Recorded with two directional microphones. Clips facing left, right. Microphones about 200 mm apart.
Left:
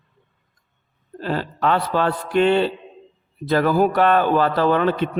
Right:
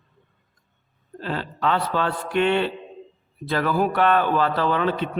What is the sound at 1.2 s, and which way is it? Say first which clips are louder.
A man's voice: left 4 dB; 40° left (ahead or behind).